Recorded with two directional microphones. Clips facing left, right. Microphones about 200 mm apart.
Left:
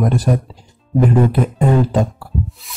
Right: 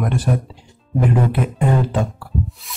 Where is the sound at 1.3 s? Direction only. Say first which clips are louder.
Left 4 dB; 40° left (ahead or behind).